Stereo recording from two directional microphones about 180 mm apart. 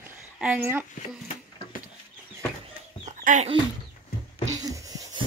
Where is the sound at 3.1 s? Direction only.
40° right (ahead or behind).